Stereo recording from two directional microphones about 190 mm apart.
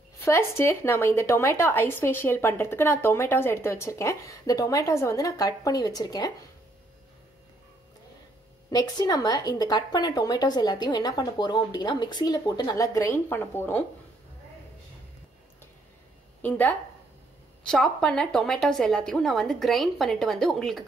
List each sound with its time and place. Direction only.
0.2 s a woman's voice: 15° left (ahead or behind)
8.6 s a woman's voice: 20° left (ahead or behind)
16.4 s a woman's voice: 10° left (ahead or behind)